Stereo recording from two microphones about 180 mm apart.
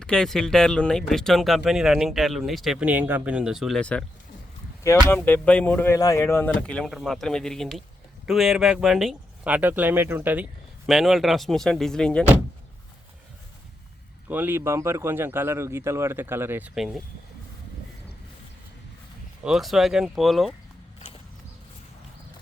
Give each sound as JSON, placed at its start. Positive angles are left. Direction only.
{"t": 0.0, "sound": "speech", "side_deg": 5}
{"t": 5.0, "sound": "speech", "side_deg": 10}
{"t": 14.3, "sound": "speech", "side_deg": -10}
{"t": 19.5, "sound": "speech", "side_deg": 0}